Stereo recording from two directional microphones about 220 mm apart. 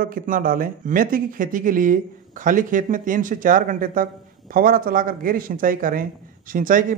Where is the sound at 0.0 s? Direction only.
40° right (ahead or behind).